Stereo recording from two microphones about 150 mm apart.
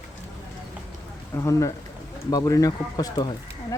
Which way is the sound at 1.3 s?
20° left (ahead or behind).